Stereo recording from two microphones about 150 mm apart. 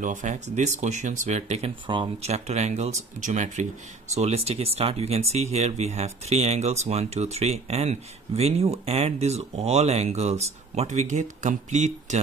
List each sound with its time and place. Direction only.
0.0 s speech: 55° right (ahead or behind)